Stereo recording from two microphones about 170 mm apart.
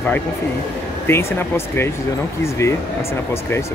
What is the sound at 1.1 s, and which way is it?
Speech, 15° left (ahead or behind).